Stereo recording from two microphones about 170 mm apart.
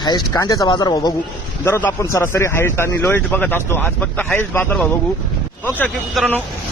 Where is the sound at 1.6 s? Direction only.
15° left (ahead or behind).